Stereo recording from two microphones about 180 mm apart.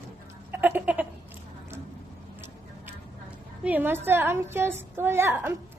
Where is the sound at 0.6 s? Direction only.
10° right (ahead or behind).